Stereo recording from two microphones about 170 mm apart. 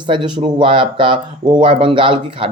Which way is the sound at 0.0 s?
30° right (ahead or behind).